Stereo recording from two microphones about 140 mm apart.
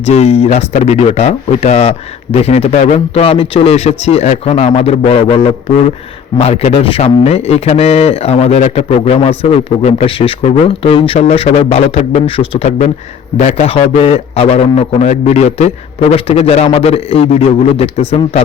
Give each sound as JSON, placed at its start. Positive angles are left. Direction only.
{"t": 0.0, "sound": "speech", "side_deg": 50}